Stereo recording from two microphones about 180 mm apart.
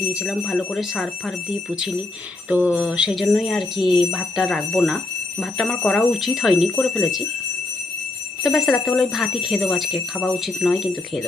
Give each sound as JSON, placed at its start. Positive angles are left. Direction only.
{"t": 0.1, "sound": "speech", "side_deg": -5}
{"t": 2.5, "sound": "speech", "side_deg": -5}
{"t": 8.4, "sound": "speech", "side_deg": 0}